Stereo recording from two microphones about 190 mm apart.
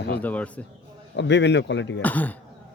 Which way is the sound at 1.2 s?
65° left (ahead or behind).